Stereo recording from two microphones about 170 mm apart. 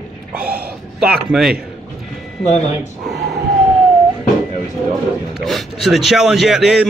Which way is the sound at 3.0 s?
Centre (ahead or behind).